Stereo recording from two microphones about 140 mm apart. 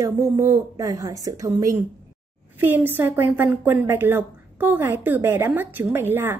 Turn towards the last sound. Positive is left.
turn(degrees=-15)  # may be behind; listen again after turning